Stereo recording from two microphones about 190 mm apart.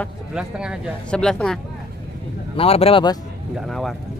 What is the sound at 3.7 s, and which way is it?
Speech, centre (ahead or behind).